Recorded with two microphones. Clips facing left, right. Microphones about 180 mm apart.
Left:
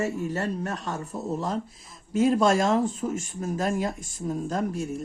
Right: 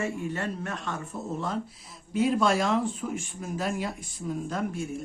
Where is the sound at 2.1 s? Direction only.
45° left (ahead or behind).